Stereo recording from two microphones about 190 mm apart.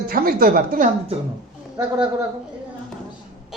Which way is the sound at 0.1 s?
50° right (ahead or behind).